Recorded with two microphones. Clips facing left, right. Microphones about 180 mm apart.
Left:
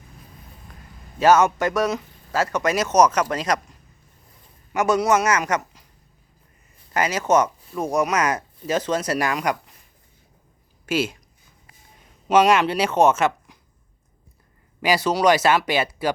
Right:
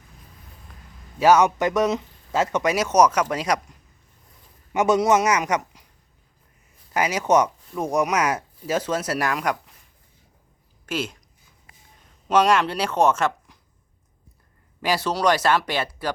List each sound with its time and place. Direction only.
1.2 s speech: 15° right (ahead or behind)
2.7 s speech: 10° right (ahead or behind)
4.7 s speech: 20° right (ahead or behind); by 9.7 s centre (ahead or behind)
10.8 s speech: 5° left (ahead or behind)
12.3 s speech: 5° left (ahead or behind)
14.8 s speech: centre (ahead or behind)